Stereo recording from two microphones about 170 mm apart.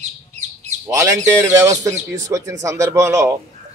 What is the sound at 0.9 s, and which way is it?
A man's voice, 20° right (ahead or behind).